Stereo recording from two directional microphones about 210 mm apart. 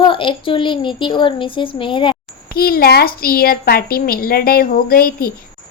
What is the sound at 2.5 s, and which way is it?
A woman's voice, 45° left (ahead or behind).